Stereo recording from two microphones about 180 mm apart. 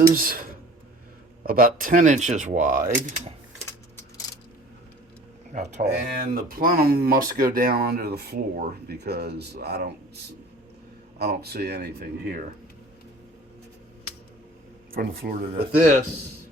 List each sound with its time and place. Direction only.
0.1 s speech: 50° right (ahead or behind)
1.5 s speech: 55° right (ahead or behind)
5.5 s speech: 40° right (ahead or behind)
5.9 s speech: 55° right (ahead or behind)
11.2 s speech: 60° right (ahead or behind)
14.9 s speech: 60° right (ahead or behind)
15.8 s speech: 45° right (ahead or behind)